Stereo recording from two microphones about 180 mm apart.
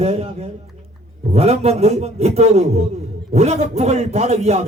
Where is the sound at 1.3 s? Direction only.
35° right (ahead or behind).